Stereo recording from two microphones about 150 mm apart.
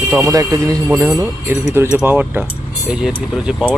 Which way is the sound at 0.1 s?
15° right (ahead or behind).